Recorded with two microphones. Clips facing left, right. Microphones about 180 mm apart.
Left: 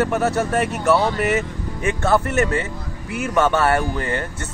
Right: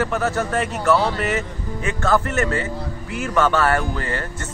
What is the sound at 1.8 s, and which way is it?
Speech, 20° left (ahead or behind).